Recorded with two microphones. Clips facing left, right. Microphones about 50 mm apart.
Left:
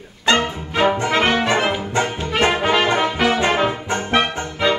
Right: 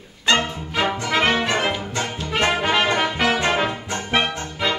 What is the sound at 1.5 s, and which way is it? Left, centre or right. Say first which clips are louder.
Music: left 4 dB; centre.